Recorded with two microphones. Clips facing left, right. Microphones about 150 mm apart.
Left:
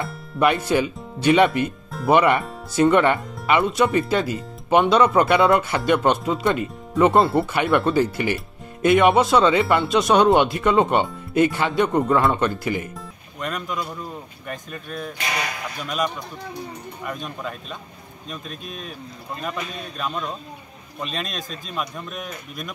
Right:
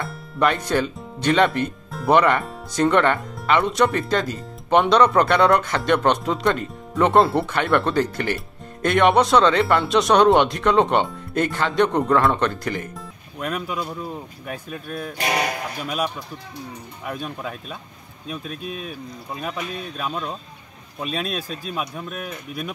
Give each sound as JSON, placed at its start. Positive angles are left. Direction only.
{"t": 0.0, "sound": "music", "side_deg": 0}
{"t": 0.5, "sound": "speech", "side_deg": 10}
{"t": 13.4, "sound": "speech", "side_deg": -5}
{"t": 15.1, "sound": "speech", "side_deg": -50}
{"t": 17.0, "sound": "speech", "side_deg": -5}